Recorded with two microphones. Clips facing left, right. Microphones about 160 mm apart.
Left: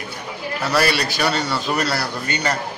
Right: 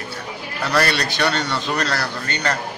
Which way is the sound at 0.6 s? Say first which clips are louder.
Even; 5° left (ahead or behind).